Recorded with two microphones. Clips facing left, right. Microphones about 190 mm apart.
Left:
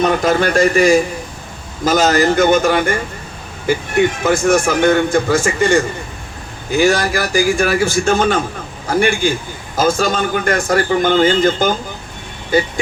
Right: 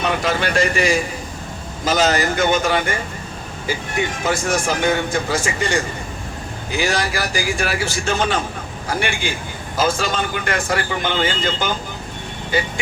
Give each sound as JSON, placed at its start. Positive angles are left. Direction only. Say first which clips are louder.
{"t": 0.0, "sound": "speech", "louder": "left 6 dB", "side_deg": 45}